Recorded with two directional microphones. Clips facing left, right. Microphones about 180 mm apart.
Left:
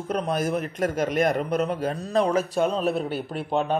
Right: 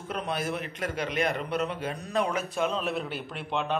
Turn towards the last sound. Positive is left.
turn(degrees=40)  # may be behind; listen again after turning